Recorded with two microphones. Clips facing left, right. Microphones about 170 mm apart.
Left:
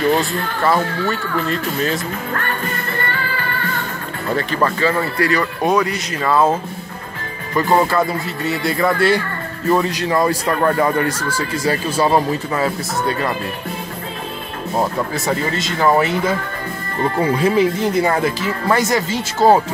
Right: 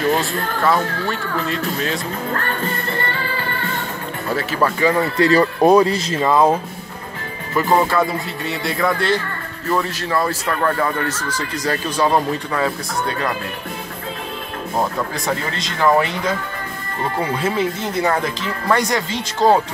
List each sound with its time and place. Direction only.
0.1 s speech: centre (ahead or behind)
4.3 s speech: 5° right (ahead or behind); by 6.3 s 25° right (ahead or behind)
6.3 s speech: 15° right (ahead or behind)
7.5 s speech: centre (ahead or behind)
9.7 s speech: 20° left (ahead or behind)
14.8 s speech: 5° left (ahead or behind)
17.4 s speech: 10° left (ahead or behind)